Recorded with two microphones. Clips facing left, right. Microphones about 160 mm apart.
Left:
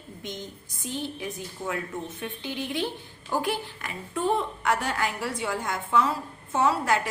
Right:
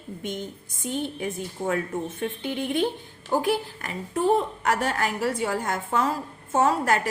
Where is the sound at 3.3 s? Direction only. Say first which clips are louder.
Right 4 dB; 40° right (ahead or behind).